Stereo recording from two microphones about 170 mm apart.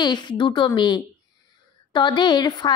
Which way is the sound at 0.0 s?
25° left (ahead or behind).